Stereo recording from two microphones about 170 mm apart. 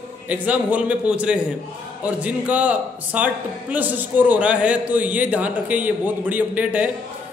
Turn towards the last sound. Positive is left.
turn(degrees=-10)  # may be behind; listen again after turning